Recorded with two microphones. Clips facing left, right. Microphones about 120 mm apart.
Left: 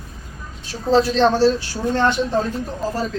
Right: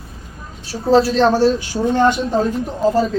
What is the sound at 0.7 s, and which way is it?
A woman's voice, 5° right (ahead or behind).